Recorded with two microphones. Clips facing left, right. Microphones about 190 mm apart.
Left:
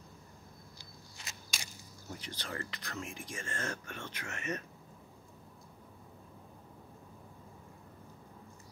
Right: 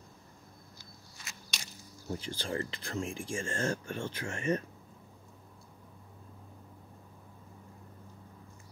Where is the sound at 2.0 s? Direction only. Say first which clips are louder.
Right 7 dB; 30° right (ahead or behind).